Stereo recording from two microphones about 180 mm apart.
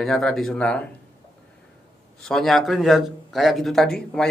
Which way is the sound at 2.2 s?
Centre (ahead or behind).